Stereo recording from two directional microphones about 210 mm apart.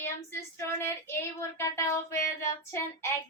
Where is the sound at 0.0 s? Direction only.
10° left (ahead or behind).